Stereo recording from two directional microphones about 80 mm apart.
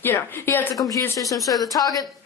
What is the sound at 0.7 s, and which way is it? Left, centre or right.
Speech, left.